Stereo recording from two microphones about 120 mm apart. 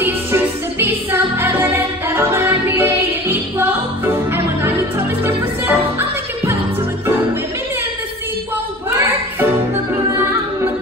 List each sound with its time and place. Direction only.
0.0 s music: 15° right (ahead or behind)
8.9 s music: 20° right (ahead or behind)